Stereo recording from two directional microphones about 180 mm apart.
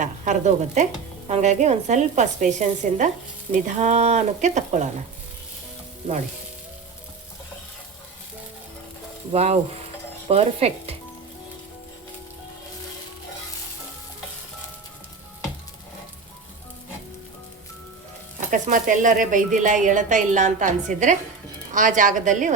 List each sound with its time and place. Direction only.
0.0 s a woman's voice: 40° right (ahead or behind)
9.3 s speech: 35° right (ahead or behind)
18.3 s speech: 45° right (ahead or behind)